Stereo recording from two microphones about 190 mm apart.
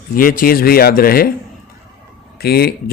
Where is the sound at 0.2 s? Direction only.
50° left (ahead or behind).